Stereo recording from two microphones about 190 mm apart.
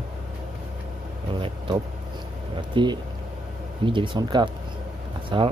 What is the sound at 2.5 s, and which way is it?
Speech, 25° right (ahead or behind).